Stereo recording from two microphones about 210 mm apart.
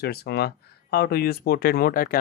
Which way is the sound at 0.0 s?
50° left (ahead or behind).